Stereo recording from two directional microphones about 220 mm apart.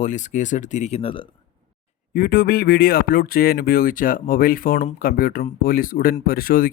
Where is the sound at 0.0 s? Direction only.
35° left (ahead or behind).